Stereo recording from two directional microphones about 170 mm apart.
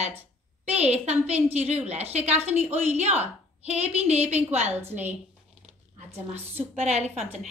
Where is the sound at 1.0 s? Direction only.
40° right (ahead or behind).